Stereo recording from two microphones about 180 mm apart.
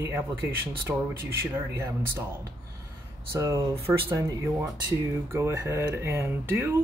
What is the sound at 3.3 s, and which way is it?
Speech, 15° right (ahead or behind).